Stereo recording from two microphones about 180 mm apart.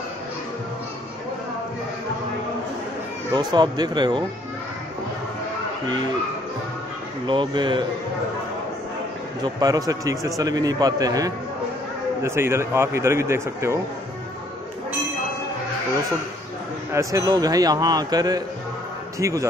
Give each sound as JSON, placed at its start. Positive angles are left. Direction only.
{"t": 3.3, "sound": "a man's voice", "side_deg": -20}
{"t": 7.2, "sound": "a man's voice", "side_deg": -25}
{"t": 9.4, "sound": "a man's voice", "side_deg": -20}
{"t": 16.9, "sound": "a man's voice", "side_deg": -20}